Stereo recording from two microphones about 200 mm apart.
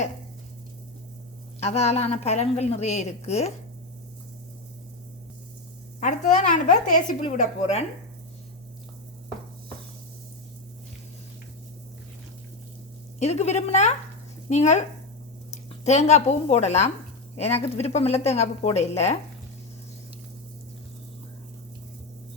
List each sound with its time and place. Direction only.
1.6 s a woman's voice: 35° left (ahead or behind)
6.0 s a woman's voice: 35° left (ahead or behind)
13.1 s a woman's voice: 35° left (ahead or behind)